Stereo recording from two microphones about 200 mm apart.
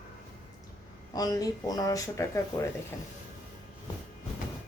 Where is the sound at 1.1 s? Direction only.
20° left (ahead or behind).